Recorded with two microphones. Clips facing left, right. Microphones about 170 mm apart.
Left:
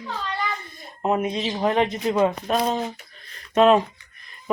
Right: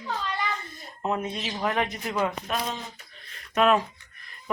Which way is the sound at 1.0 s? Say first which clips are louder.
Left 6 dB; 15° left (ahead or behind).